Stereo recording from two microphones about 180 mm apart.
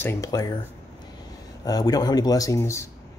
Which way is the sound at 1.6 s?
20° left (ahead or behind).